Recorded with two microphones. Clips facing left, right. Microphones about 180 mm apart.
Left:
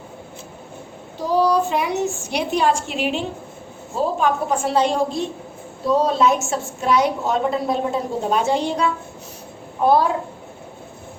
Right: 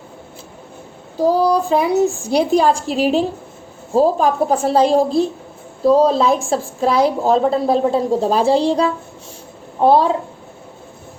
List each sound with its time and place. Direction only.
1.2 s a woman's voice: 35° right (ahead or behind)